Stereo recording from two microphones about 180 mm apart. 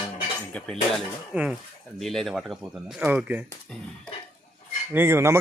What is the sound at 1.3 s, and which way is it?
Cutlery, 5° right (ahead or behind).